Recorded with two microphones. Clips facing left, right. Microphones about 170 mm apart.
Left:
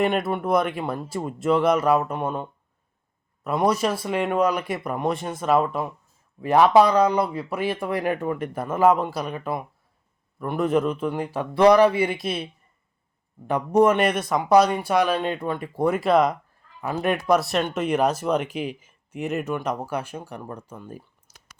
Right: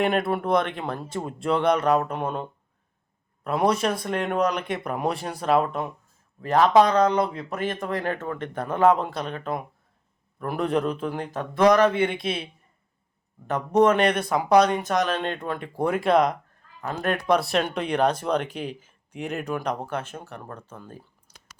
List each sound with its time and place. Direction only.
0.0 s speech: centre (ahead or behind)
11.3 s speech: 10° left (ahead or behind)
13.5 s speech: 10° left (ahead or behind)